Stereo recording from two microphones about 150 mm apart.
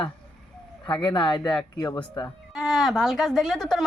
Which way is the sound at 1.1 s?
30° left (ahead or behind).